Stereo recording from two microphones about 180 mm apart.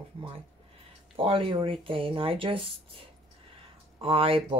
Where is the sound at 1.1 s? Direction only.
30° right (ahead or behind).